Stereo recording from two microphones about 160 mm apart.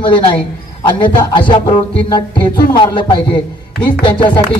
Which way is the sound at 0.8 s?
30° left (ahead or behind).